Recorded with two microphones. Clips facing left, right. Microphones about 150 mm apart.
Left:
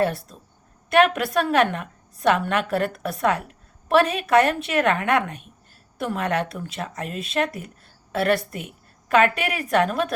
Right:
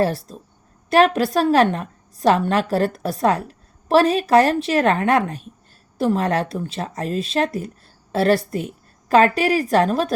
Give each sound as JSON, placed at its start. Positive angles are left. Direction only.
{"t": 0.0, "sound": "a woman's voice", "side_deg": -35}